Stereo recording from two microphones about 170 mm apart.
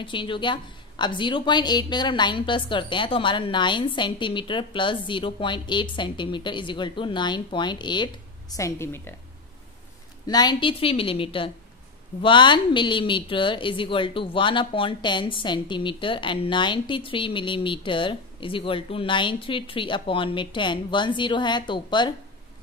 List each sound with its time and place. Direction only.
0.0 s a woman's voice: 30° left (ahead or behind)
10.2 s a woman's voice: 25° left (ahead or behind)